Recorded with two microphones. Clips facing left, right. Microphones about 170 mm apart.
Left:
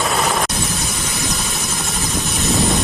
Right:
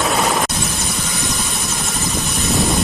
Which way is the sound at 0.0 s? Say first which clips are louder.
Right 1 dB; centre (ahead or behind).